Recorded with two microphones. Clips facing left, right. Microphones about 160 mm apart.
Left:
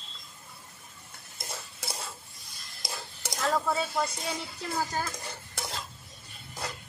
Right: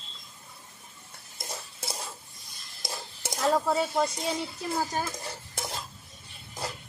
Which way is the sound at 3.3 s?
20° right (ahead or behind).